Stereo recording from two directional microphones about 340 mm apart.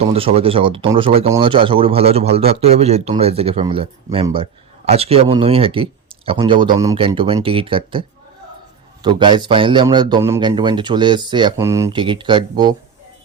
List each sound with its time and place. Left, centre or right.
0.1 s speech: centre
9.0 s speech: centre